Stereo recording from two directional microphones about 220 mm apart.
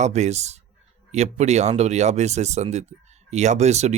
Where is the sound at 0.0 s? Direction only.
30° right (ahead or behind).